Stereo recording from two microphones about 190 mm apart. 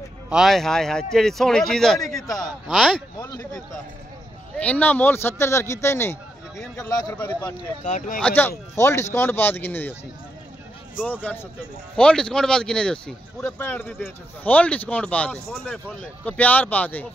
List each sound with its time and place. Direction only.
0.3 s speech: centre (ahead or behind)
2.2 s a man's voice: 20° left (ahead or behind)
2.7 s speech: centre (ahead or behind)
3.2 s a man's voice: 15° left (ahead or behind)
7.8 s speech: 40° left (ahead or behind)
8.2 s speech: 5° left (ahead or behind)
11.0 s speech: 10° left (ahead or behind)